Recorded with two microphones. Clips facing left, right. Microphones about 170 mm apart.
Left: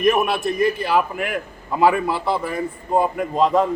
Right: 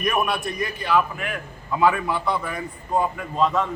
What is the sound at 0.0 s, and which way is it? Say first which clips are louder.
A man's voice: left 6 dB; 25° left (ahead or behind).